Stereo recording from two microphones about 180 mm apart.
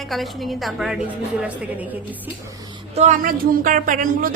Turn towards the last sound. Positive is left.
turn(degrees=-50)  # may be behind; listen again after turning